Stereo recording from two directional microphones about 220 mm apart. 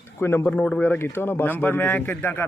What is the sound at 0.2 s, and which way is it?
Speech, 10° left (ahead or behind).